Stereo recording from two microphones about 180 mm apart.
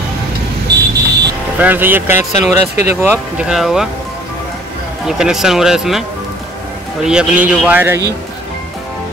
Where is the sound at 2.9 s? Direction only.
10° right (ahead or behind).